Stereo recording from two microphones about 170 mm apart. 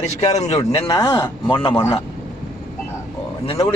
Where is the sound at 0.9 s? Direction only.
25° left (ahead or behind).